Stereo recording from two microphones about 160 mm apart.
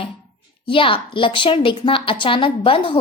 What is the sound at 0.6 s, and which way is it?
A woman's voice, 35° left (ahead or behind).